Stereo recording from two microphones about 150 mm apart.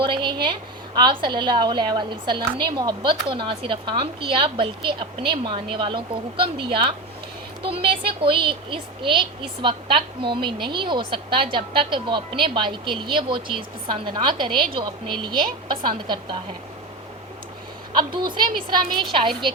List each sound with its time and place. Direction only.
0.0 s a woman's voice: 30° right (ahead or behind)
17.9 s a woman's voice: 30° right (ahead or behind)